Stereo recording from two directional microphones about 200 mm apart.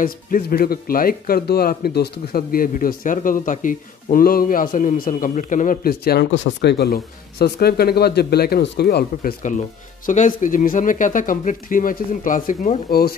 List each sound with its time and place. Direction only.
0.0 s speech: 45° left (ahead or behind)